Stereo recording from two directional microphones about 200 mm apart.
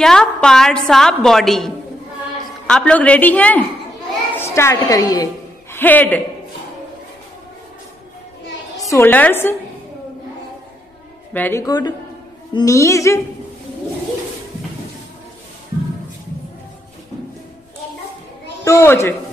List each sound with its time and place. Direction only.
0.0 s a woman's voice: 5° left (ahead or behind)
8.8 s a woman's voice: 10° left (ahead or behind)
11.3 s a woman's voice: 10° left (ahead or behind)
18.6 s a man's voice: 15° left (ahead or behind)